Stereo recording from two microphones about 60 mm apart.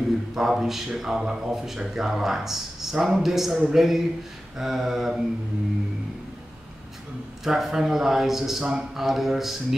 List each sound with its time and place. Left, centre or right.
0.3 s a man's voice: centre
7.4 s a man's voice: centre